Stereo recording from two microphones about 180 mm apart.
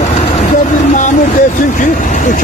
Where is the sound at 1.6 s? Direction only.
45° left (ahead or behind).